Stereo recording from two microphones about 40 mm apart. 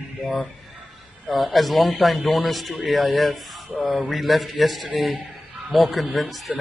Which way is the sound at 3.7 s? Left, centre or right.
Left.